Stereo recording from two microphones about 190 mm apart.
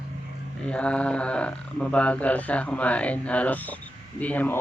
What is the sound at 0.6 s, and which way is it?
Speech, 5° left (ahead or behind).